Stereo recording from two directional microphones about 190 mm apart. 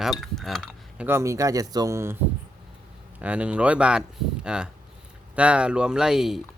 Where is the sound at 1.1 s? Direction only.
15° right (ahead or behind).